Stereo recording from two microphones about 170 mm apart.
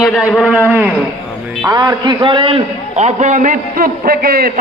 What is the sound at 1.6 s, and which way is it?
A man's voice, 25° right (ahead or behind).